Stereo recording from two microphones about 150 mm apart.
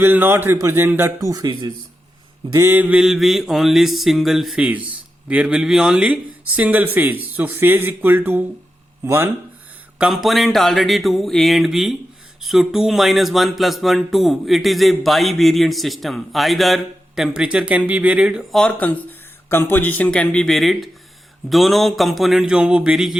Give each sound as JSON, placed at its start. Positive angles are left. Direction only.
{"t": 0.0, "sound": "speech", "side_deg": -15}
{"t": 2.5, "sound": "speech", "side_deg": -15}
{"t": 10.0, "sound": "speech", "side_deg": 0}